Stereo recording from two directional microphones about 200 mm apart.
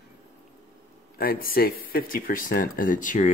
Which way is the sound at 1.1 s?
45° left (ahead or behind).